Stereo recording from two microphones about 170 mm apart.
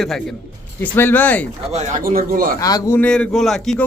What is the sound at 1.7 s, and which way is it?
Speech, 55° right (ahead or behind).